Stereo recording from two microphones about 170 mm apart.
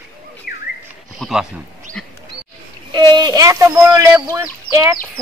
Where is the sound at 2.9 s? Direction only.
25° right (ahead or behind).